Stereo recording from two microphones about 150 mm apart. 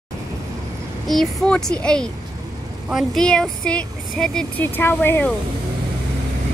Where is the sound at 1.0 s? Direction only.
5° left (ahead or behind).